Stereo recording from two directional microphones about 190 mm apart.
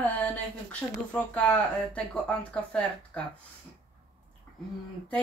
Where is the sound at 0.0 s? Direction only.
10° left (ahead or behind).